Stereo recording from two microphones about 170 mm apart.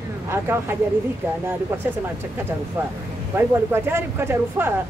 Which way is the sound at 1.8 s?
10° right (ahead or behind).